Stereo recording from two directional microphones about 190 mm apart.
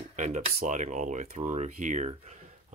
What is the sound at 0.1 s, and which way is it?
Speech, 40° right (ahead or behind).